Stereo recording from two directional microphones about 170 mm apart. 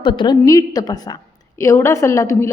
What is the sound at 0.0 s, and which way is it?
A woman's voice, 30° left (ahead or behind).